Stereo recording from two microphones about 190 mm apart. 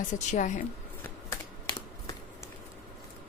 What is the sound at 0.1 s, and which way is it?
Speech, 40° left (ahead or behind).